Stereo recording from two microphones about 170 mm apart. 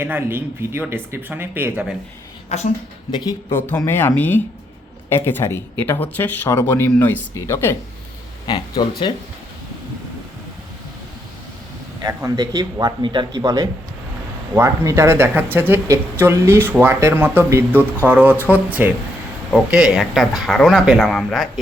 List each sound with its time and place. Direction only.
0.0 s speech: 15° right (ahead or behind)
2.5 s a woman's voice: 40° left (ahead or behind)
3.5 s speech: 15° left (ahead or behind)
8.4 s speech: 25° left (ahead or behind)
12.0 s a man's voice: 20° right (ahead or behind); by 21.6 s centre (ahead or behind)